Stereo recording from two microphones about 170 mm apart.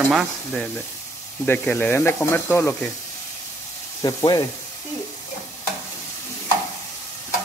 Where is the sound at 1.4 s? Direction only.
10° left (ahead or behind).